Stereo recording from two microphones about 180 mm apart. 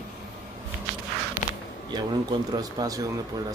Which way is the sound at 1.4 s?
45° left (ahead or behind).